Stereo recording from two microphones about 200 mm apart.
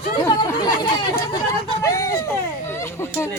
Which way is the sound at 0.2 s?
20° left (ahead or behind).